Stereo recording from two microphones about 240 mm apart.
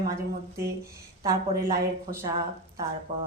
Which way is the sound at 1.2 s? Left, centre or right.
Centre.